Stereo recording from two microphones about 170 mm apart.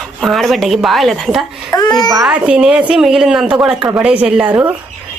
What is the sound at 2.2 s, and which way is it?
A woman's voice, 5° right (ahead or behind).